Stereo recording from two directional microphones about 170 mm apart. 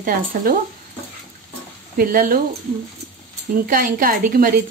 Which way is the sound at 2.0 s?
55° right (ahead or behind).